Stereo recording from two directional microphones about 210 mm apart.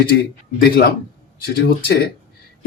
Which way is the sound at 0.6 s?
45° left (ahead or behind).